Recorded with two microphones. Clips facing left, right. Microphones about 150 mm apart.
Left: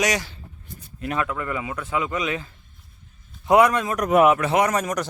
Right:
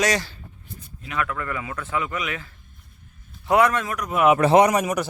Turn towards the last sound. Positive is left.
turn(degrees=-10)  # may be behind; listen again after turning